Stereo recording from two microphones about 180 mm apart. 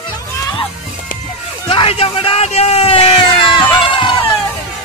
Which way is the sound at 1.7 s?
30° left (ahead or behind).